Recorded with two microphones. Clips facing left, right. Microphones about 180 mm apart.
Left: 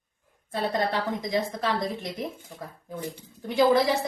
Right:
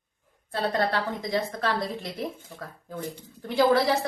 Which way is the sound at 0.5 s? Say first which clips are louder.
Right 1 dB; 15° left (ahead or behind).